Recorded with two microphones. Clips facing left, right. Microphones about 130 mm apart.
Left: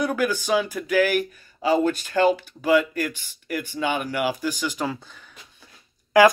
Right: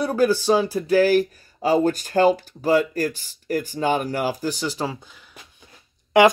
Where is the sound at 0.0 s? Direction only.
35° right (ahead or behind).